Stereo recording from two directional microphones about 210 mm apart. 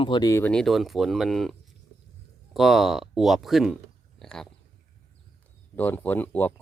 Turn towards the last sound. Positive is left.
turn(degrees=10)  # may be behind; listen again after turning